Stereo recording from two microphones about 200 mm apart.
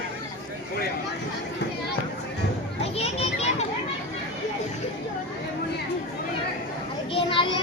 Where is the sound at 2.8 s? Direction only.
30° left (ahead or behind).